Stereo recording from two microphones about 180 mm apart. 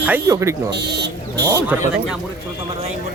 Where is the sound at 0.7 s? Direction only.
70° right (ahead or behind).